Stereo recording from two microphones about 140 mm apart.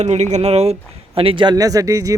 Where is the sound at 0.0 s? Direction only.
55° right (ahead or behind).